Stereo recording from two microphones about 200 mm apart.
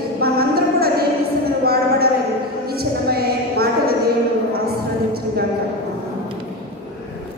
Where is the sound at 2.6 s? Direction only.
50° right (ahead or behind).